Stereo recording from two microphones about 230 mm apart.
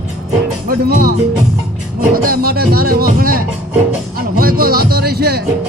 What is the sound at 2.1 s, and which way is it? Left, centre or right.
Speech, right.